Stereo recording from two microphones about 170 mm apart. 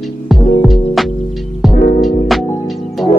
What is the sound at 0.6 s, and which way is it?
Music, centre (ahead or behind).